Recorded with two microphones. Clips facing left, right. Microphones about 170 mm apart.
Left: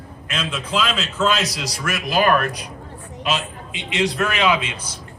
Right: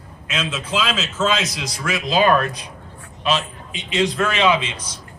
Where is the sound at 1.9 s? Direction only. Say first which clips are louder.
Right 2 dB; 25° right (ahead or behind).